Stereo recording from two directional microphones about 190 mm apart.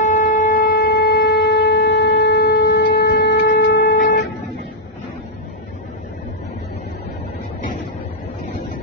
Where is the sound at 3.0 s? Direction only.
65° left (ahead or behind).